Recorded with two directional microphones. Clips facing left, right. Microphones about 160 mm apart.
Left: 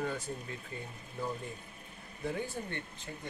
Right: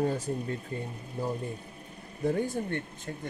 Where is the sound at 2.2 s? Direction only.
40° right (ahead or behind).